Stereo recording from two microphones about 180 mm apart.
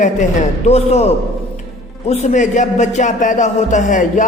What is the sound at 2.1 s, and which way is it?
A man's voice, 40° left (ahead or behind).